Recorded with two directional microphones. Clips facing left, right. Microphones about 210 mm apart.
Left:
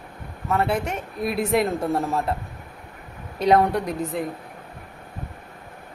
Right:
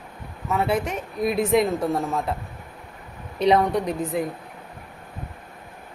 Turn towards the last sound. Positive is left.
turn(degrees=0)  # may be behind; listen again after turning